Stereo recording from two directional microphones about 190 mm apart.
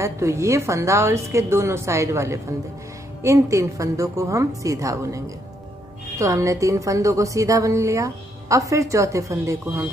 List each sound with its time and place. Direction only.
0.0 s a woman's voice: 15° right (ahead or behind)